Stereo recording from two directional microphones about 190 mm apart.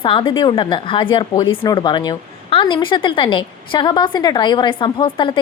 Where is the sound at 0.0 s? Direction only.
25° left (ahead or behind).